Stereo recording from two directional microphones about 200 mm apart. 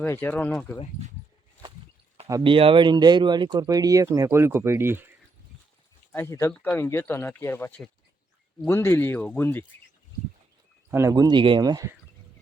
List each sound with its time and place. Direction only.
0.0 s speech: 10° left (ahead or behind)
2.2 s speech: 20° right (ahead or behind)
6.1 s speech: 10° left (ahead or behind)
10.9 s speech: 15° right (ahead or behind)